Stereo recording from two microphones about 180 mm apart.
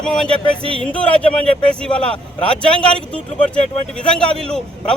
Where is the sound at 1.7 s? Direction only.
5° left (ahead or behind).